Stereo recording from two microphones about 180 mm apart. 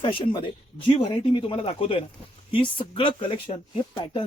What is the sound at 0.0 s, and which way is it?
Speech, 30° left (ahead or behind).